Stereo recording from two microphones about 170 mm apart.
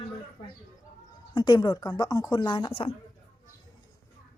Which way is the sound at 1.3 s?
25° left (ahead or behind).